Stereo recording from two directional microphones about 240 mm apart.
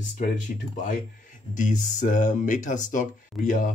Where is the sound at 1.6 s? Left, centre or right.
Left.